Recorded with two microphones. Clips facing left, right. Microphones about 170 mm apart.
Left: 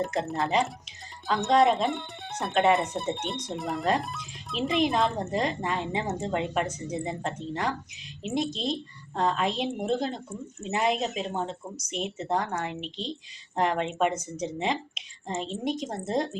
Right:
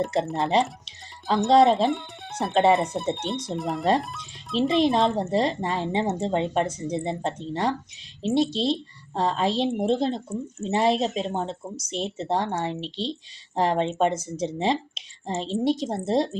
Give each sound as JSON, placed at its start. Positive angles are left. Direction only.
{"t": 0.2, "sound": "speech", "side_deg": 0}
{"t": 0.5, "sound": "speech", "side_deg": -35}
{"t": 1.8, "sound": "speech", "side_deg": 0}
{"t": 5.1, "sound": "speech", "side_deg": -35}